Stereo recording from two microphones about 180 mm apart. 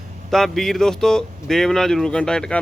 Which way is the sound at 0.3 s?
Centre (ahead or behind).